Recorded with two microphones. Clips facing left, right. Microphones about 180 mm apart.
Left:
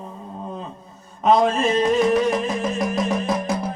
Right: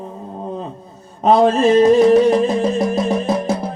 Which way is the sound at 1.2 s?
35° right (ahead or behind).